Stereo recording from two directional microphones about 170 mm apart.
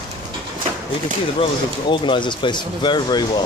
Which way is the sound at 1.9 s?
30° left (ahead or behind).